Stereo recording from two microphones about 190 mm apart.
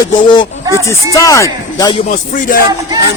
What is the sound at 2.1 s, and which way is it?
Music, 45° left (ahead or behind).